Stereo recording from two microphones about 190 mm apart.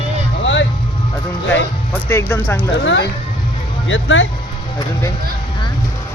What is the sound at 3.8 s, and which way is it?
Speech, 90° left.